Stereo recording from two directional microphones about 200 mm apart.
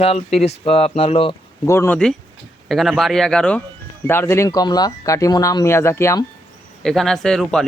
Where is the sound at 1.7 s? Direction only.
10° left (ahead or behind).